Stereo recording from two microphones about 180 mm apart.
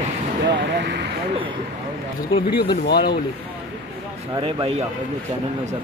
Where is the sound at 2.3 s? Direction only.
60° left (ahead or behind).